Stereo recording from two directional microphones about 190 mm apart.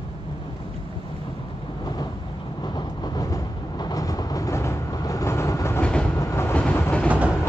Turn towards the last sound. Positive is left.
turn(degrees=-5)  # may be behind; listen again after turning